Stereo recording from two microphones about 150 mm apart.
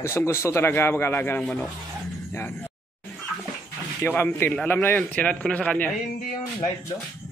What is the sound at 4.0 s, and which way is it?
Speech, 15° left (ahead or behind).